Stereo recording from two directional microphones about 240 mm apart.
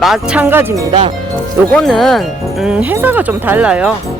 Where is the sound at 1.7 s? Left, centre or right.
Centre.